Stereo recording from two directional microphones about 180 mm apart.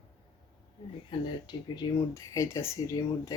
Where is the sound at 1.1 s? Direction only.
25° left (ahead or behind).